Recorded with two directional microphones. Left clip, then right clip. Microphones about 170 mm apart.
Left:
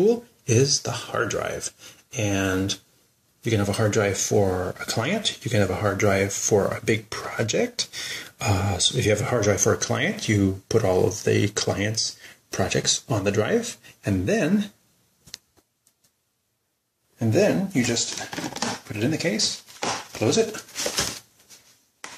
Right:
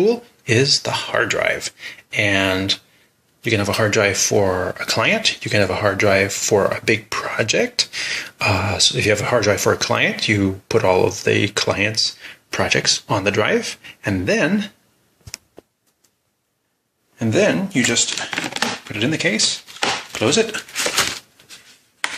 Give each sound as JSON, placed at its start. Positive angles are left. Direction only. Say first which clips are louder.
{"t": 0.0, "sound": "speech", "louder": "right 3 dB", "side_deg": -5}
{"t": 17.2, "sound": "speech", "louder": "right 4 dB", "side_deg": -5}
{"t": 18.3, "sound": "speech", "louder": "right 8 dB", "side_deg": 10}
{"t": 18.9, "sound": "speech", "louder": "right 5 dB", "side_deg": -5}